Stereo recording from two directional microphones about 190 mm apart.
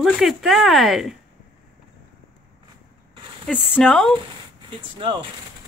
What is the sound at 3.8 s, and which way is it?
Speech, 5° left (ahead or behind).